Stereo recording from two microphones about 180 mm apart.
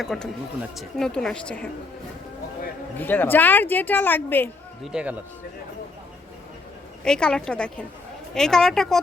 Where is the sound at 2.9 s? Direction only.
10° left (ahead or behind).